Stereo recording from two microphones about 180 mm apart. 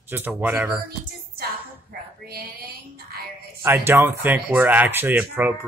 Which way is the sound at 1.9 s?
60° right (ahead or behind).